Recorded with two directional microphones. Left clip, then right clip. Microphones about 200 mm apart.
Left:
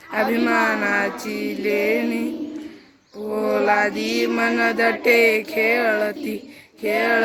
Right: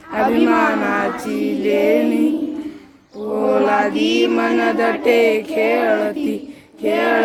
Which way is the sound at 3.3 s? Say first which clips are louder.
Right 3 dB; 10° left (ahead or behind).